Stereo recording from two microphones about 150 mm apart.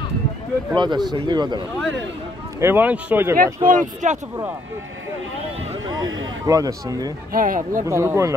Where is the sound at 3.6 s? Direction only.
55° right (ahead or behind).